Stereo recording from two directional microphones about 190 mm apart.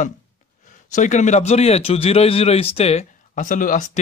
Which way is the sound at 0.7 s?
40° left (ahead or behind).